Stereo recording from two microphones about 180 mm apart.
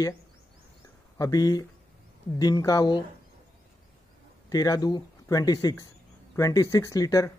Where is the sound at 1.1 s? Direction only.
20° left (ahead or behind).